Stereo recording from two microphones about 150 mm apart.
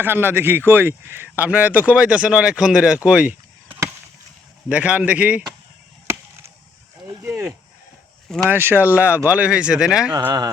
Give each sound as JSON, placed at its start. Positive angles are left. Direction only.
{"t": 0.0, "sound": "speech", "side_deg": -15}
{"t": 7.2, "sound": "speech", "side_deg": -15}